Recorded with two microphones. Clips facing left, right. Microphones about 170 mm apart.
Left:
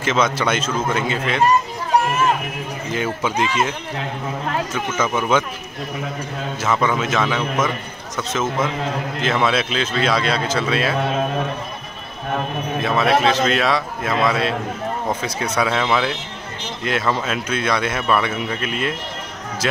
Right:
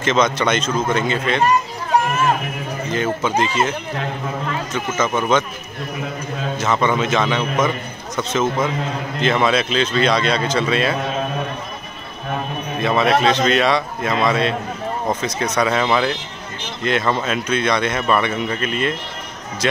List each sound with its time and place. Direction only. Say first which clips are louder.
0.0 s a man's voice: right 2 dB; 5° left (ahead or behind)
2.9 s a man's voice: right 3 dB; 10° left (ahead or behind)
4.7 s a man's voice: right 4 dB; 10° left (ahead or behind)
6.6 s speech: right 1 dB; 5° left (ahead or behind)
12.8 s speech: right 1 dB; centre (ahead or behind)